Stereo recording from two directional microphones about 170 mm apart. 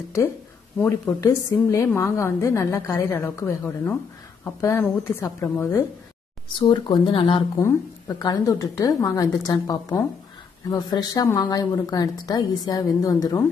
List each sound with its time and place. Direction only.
0.7 s a woman's voice: 15° left (ahead or behind)
6.6 s speech: 30° left (ahead or behind)